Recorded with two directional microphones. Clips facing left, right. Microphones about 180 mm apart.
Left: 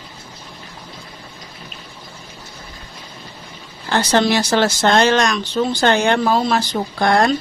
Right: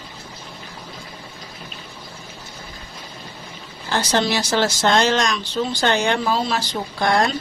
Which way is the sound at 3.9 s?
60° left (ahead or behind).